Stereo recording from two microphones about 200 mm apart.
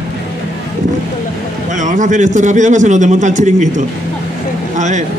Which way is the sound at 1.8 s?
40° right (ahead or behind).